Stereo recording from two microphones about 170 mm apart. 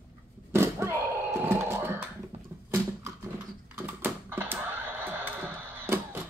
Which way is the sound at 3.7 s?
10° right (ahead or behind).